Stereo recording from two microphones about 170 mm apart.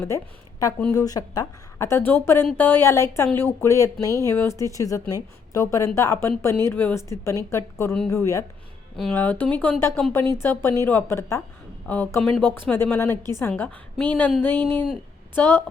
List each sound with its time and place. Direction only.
0.9 s a woman's voice: 20° left (ahead or behind)
14.6 s speech: 25° right (ahead or behind)
15.4 s a woman's voice: 10° left (ahead or behind)